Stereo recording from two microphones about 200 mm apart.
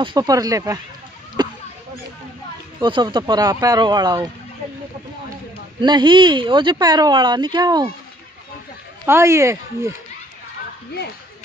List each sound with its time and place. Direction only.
0.0 s speech: 20° right (ahead or behind)
1.4 s a sound: 20° right (ahead or behind)
2.8 s speech: 20° right (ahead or behind)
5.8 s speech: 25° right (ahead or behind)
9.0 s speech: 15° right (ahead or behind)